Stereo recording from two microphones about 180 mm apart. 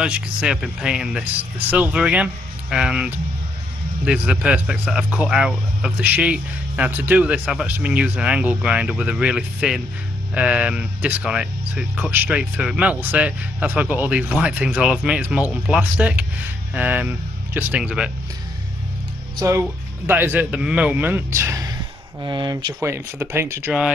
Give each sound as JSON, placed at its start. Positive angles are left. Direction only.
{"t": 0.0, "sound": "speech", "side_deg": -5}
{"t": 20.1, "sound": "speech", "side_deg": -10}
{"t": 22.8, "sound": "speech", "side_deg": -15}